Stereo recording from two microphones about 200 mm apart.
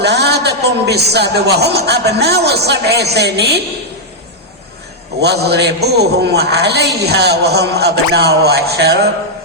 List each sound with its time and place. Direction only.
0.0 s a man's voice: 55° right (ahead or behind)
5.2 s a man's voice: 55° right (ahead or behind)